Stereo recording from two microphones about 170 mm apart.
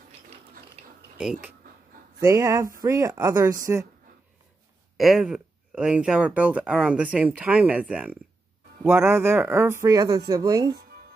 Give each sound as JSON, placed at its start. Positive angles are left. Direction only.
{"t": 1.2, "sound": "speech", "side_deg": -5}
{"t": 2.1, "sound": "speech", "side_deg": -15}
{"t": 4.9, "sound": "speech", "side_deg": 0}